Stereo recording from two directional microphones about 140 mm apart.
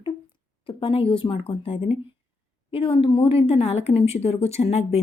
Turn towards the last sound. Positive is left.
turn(degrees=50)  # may be behind; listen again after turning